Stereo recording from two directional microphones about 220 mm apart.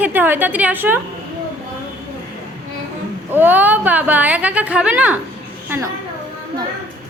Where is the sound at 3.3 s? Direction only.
10° right (ahead or behind).